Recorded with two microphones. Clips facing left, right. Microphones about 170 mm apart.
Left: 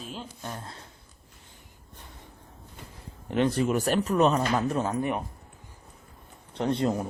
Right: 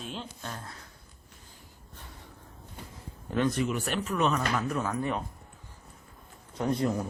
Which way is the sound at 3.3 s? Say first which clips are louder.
Left 3 dB; 30° left (ahead or behind).